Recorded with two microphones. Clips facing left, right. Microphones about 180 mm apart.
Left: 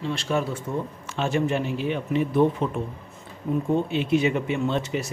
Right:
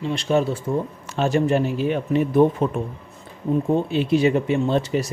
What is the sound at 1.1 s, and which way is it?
Speech, 40° right (ahead or behind).